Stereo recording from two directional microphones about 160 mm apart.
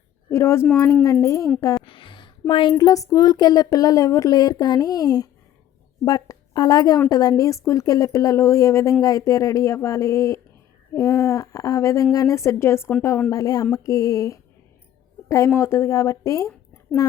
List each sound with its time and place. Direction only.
0.3 s a woman's voice: 15° left (ahead or behind)
1.8 s a sound: 30° left (ahead or behind)
2.5 s a woman's voice: 30° left (ahead or behind)